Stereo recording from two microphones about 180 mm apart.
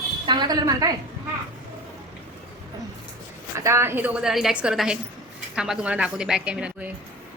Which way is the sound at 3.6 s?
15° right (ahead or behind).